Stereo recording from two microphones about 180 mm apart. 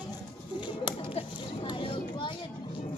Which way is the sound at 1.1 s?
30° left (ahead or behind).